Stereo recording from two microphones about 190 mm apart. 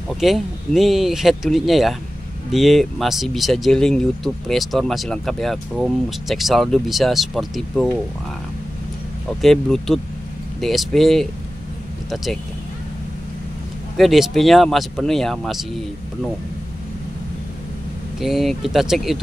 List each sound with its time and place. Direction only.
0.1 s speech: centre (ahead or behind)
9.4 s speech: centre (ahead or behind)
13.9 s speech: centre (ahead or behind)
18.2 s speech: centre (ahead or behind)